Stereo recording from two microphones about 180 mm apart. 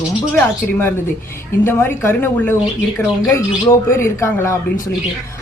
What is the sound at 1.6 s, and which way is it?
Speech, 10° left (ahead or behind).